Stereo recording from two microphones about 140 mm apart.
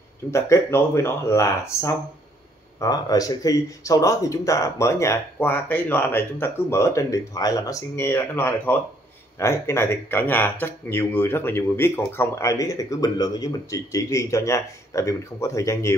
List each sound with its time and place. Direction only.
0.3 s speech: 20° left (ahead or behind)